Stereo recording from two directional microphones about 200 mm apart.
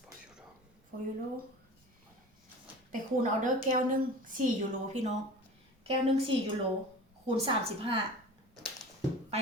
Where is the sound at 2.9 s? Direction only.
40° right (ahead or behind).